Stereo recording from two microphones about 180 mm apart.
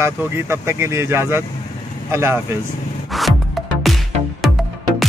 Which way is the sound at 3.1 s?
Centre (ahead or behind).